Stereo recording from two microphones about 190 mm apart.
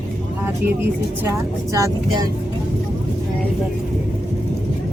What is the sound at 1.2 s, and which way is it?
Speech, 15° right (ahead or behind).